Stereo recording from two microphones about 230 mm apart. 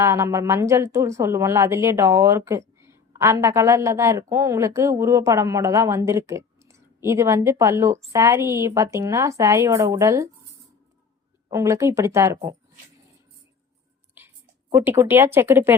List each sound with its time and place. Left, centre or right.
0.0 s speech: centre
11.4 s speech: centre
14.2 s speech: centre